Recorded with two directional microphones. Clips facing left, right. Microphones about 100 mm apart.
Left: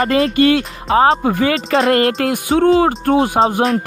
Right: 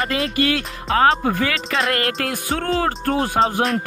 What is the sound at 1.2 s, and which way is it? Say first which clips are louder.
Speech: left 5 dB; 20° left (ahead or behind).